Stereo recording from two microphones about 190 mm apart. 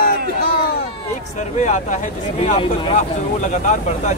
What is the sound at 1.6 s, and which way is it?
Speech, 40° left (ahead or behind).